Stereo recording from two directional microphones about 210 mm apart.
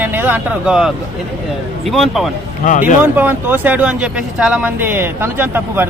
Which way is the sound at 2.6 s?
35° left (ahead or behind).